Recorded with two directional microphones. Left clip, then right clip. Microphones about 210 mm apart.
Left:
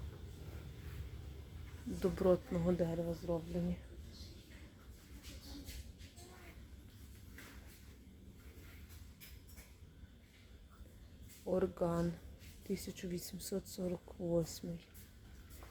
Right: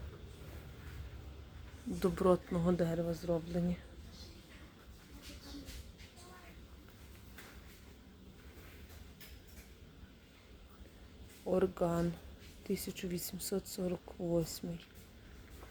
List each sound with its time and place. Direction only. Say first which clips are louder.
2.0 s speech: right 2 dB; 20° right (ahead or behind)
11.4 s speech: right 3 dB; 20° right (ahead or behind)